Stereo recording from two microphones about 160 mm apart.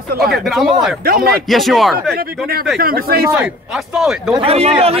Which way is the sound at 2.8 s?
70° right (ahead or behind).